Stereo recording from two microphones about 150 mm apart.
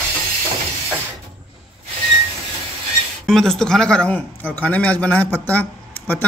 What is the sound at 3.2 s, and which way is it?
A man's voice, 5° left (ahead or behind).